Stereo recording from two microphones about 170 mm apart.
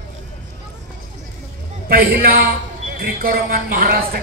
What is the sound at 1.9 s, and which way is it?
A man's voice, 60° right (ahead or behind).